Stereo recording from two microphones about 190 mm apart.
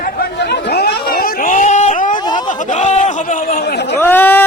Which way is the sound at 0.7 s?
55° left (ahead or behind).